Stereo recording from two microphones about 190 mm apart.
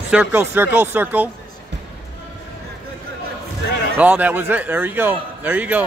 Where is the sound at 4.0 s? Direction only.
10° right (ahead or behind).